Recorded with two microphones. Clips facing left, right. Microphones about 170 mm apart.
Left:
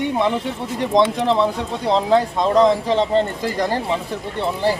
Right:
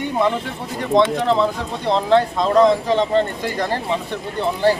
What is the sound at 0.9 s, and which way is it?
Speech, 10° left (ahead or behind).